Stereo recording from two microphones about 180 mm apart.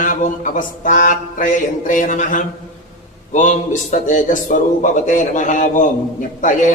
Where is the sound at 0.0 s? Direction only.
45° left (ahead or behind).